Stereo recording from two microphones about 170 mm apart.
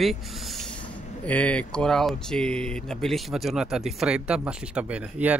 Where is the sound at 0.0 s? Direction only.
Centre (ahead or behind).